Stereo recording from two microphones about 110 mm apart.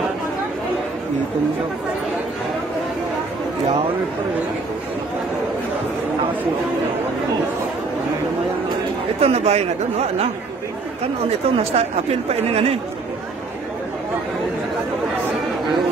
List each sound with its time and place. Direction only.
9.2 s speech: 75° right (ahead or behind)
11.4 s speech: 70° right (ahead or behind)